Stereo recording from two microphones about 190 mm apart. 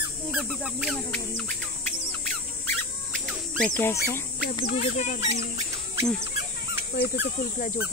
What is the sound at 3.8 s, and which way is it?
Speech, 10° left (ahead or behind).